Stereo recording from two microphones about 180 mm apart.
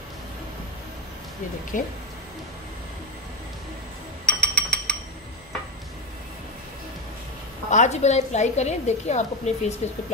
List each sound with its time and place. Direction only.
1.7 s speech: 45° left (ahead or behind)
4.4 s a sound: 5° left (ahead or behind)
7.7 s a woman's voice: 40° left (ahead or behind)